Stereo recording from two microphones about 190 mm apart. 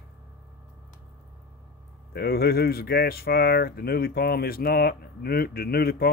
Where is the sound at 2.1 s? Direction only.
55° left (ahead or behind).